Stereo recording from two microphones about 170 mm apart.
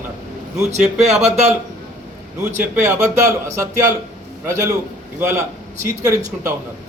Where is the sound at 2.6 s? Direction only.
15° right (ahead or behind).